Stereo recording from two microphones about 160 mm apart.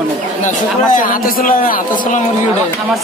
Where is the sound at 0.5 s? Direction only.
55° left (ahead or behind).